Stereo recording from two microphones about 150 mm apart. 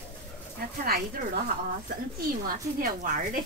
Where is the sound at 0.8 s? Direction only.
85° right.